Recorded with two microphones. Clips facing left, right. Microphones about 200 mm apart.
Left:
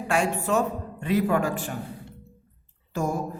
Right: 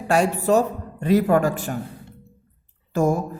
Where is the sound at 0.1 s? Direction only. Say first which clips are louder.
Right 6 dB; 40° right (ahead or behind).